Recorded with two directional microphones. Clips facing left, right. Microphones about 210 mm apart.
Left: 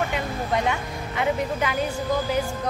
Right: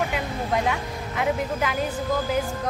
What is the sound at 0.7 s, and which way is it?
Speech, centre (ahead or behind).